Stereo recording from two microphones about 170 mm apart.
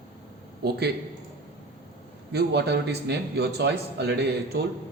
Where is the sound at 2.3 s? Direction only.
80° right.